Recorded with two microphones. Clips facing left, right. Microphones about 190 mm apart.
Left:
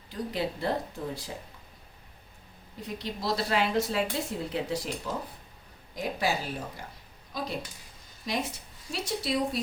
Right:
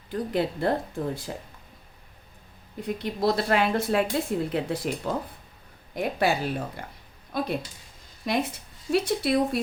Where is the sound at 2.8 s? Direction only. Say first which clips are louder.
Right 8 dB; 55° right (ahead or behind).